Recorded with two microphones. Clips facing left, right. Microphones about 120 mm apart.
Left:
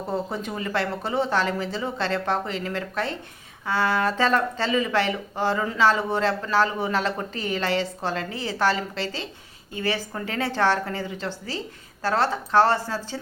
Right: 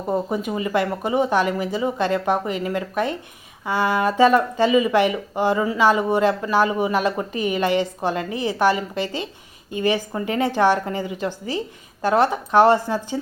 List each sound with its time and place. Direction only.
0.1 s speech: 10° right (ahead or behind)